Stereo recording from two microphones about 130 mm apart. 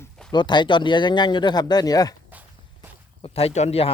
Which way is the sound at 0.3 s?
35° left (ahead or behind).